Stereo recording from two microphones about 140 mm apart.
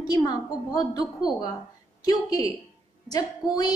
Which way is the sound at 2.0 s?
25° left (ahead or behind).